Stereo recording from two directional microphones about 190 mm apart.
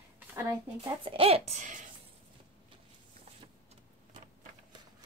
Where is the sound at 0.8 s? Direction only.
30° right (ahead or behind).